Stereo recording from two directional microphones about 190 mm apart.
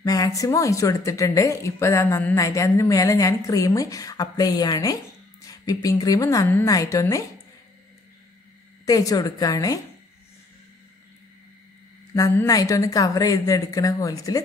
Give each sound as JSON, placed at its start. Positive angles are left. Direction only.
{"t": 0.0, "sound": "speech", "side_deg": 20}
{"t": 8.8, "sound": "a woman's voice", "side_deg": 20}
{"t": 12.2, "sound": "speech", "side_deg": 20}